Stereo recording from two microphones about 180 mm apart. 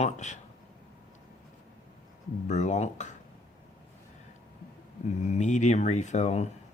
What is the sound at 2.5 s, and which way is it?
Speech, 40° left (ahead or behind).